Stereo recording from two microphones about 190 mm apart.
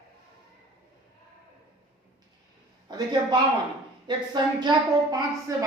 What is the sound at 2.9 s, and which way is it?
A woman's voice, 20° right (ahead or behind).